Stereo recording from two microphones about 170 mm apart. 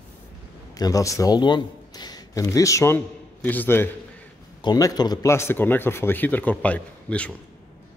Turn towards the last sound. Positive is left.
turn(degrees=10)  # may be behind; listen again after turning